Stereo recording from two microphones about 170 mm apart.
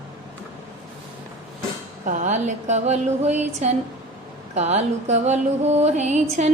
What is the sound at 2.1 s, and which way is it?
Music, 45° right (ahead or behind).